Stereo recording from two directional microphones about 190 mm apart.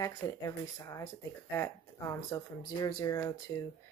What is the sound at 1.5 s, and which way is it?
Speech, 15° left (ahead or behind).